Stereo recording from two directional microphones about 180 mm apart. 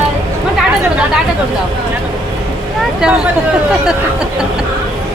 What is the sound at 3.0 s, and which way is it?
Speech, 5° right (ahead or behind).